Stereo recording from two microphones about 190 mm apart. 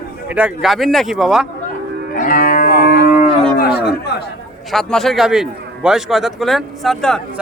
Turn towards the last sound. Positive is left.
turn(degrees=0)  # may be behind; listen again after turning